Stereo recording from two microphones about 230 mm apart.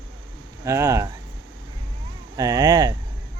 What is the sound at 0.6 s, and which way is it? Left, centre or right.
Speech, centre.